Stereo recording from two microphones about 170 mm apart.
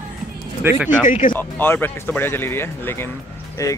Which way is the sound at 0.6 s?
15° right (ahead or behind).